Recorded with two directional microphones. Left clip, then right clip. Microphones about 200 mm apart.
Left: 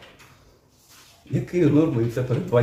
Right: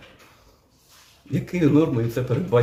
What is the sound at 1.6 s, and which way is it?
Speech, 45° right (ahead or behind).